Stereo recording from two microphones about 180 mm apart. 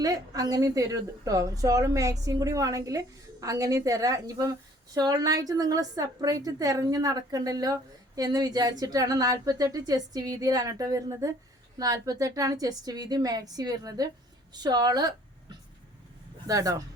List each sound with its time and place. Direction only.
0.0 s a woman's voice: 20° right (ahead or behind)